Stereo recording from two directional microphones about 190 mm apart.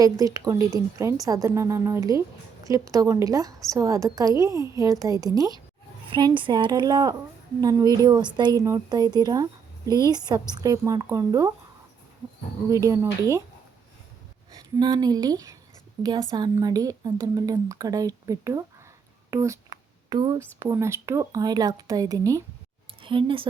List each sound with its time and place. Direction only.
0.0 s a woman's voice: 20° right (ahead or behind)
12.7 s a woman's voice: 15° right (ahead or behind)
14.5 s speech: 20° right (ahead or behind)
19.3 s a sound: 15° right (ahead or behind)
20.6 s a woman's voice: 15° right (ahead or behind)